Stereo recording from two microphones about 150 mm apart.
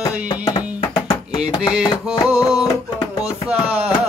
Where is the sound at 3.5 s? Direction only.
5° right (ahead or behind).